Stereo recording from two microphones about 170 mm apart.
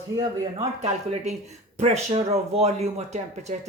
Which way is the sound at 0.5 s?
40° right (ahead or behind).